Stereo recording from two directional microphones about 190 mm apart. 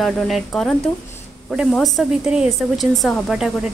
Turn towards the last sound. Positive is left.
turn(degrees=0)  # may be behind; listen again after turning